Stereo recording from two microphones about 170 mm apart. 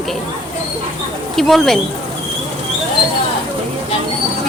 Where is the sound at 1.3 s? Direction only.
Centre (ahead or behind).